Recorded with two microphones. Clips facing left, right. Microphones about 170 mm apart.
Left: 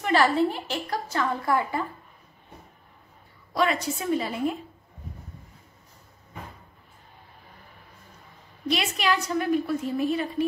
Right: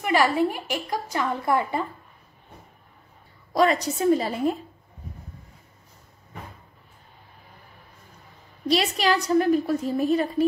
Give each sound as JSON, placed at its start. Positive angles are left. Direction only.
{"t": 0.0, "sound": "a woman's voice", "side_deg": -10}
{"t": 3.5, "sound": "a woman's voice", "side_deg": -40}
{"t": 8.6, "sound": "a woman's voice", "side_deg": -35}